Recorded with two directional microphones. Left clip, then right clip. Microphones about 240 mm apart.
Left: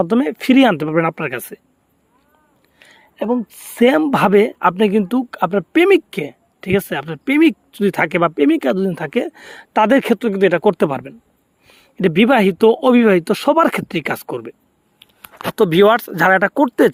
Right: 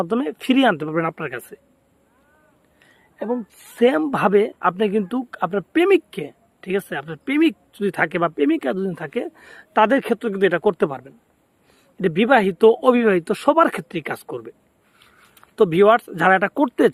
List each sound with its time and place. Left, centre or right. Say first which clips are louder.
0.0 s speech: left 6 dB; left
2.7 s speech: left 7 dB; left
15.5 s speech: left 2 dB; left